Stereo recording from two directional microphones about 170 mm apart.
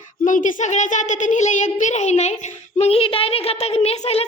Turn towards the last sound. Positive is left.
turn(degrees=40)  # may be behind; listen again after turning